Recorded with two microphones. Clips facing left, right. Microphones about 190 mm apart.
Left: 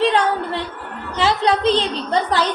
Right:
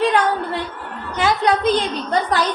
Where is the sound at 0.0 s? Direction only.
30° left (ahead or behind).